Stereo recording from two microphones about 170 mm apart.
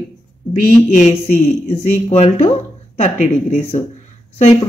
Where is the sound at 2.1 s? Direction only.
40° left (ahead or behind).